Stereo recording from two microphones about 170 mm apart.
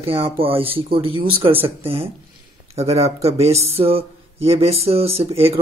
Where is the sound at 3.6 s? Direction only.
35° right (ahead or behind).